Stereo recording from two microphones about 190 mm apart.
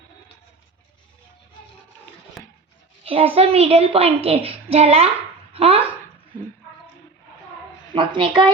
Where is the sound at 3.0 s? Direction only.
30° right (ahead or behind).